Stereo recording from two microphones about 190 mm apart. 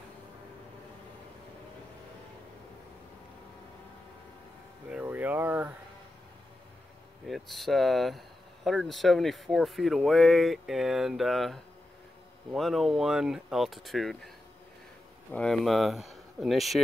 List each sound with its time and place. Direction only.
4.9 s a sound: 10° right (ahead or behind)
7.2 s speech: centre (ahead or behind)
15.3 s speech: 5° left (ahead or behind)